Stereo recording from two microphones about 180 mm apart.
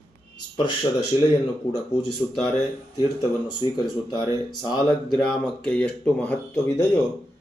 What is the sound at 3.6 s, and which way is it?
Speech, 30° left (ahead or behind).